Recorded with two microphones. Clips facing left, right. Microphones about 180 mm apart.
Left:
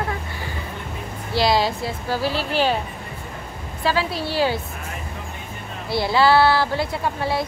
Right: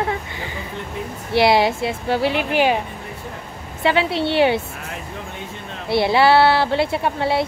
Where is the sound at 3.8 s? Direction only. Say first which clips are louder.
Right 4 dB; 25° right (ahead or behind).